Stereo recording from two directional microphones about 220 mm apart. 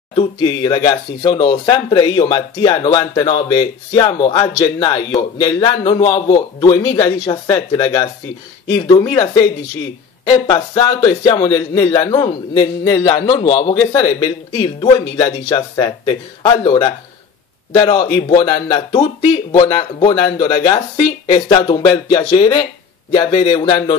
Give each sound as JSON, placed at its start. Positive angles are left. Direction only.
{"t": 0.1, "sound": "a man's voice", "side_deg": 20}